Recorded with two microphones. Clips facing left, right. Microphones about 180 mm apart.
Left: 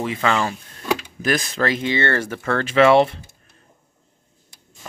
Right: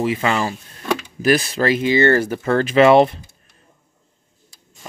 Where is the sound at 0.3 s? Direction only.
30° right (ahead or behind).